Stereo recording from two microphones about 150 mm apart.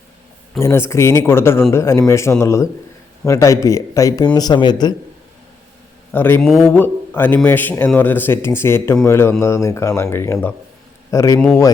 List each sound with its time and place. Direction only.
0.6 s a man's voice: 20° left (ahead or behind)
6.1 s a man's voice: 15° left (ahead or behind)
6.4 s speech: centre (ahead or behind)
6.7 s a man's voice: 15° left (ahead or behind)